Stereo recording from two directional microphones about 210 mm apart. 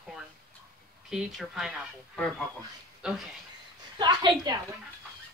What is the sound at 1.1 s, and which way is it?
Speech, centre (ahead or behind).